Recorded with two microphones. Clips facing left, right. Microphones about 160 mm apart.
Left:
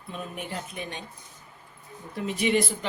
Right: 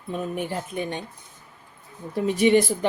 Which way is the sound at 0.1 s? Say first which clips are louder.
Right 7 dB; 55° right (ahead or behind).